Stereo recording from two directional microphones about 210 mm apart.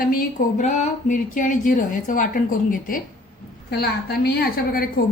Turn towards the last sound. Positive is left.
turn(degrees=45)  # may be behind; listen again after turning